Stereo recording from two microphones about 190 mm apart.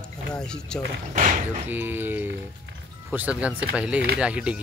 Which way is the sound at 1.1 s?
40° right (ahead or behind).